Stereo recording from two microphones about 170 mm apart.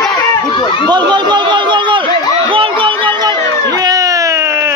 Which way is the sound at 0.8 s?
25° right (ahead or behind).